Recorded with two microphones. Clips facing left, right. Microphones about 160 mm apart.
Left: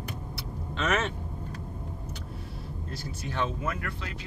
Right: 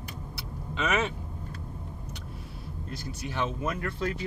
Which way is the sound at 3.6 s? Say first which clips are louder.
Right 2 dB; 25° right (ahead or behind).